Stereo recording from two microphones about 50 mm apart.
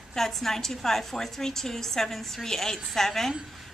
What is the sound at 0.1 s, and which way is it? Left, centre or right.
A woman's voice, centre.